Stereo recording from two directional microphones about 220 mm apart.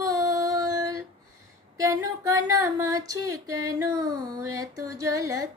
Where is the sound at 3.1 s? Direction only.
15° right (ahead or behind).